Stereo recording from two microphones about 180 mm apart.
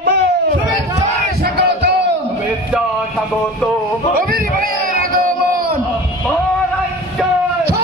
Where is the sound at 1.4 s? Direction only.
70° right (ahead or behind).